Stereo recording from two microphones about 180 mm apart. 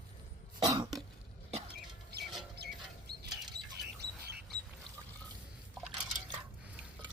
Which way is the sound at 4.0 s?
65° right (ahead or behind).